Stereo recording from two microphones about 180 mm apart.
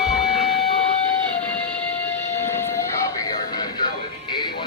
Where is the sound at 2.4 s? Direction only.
15° left (ahead or behind).